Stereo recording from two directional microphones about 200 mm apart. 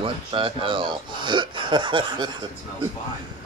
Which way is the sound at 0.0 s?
25° right (ahead or behind).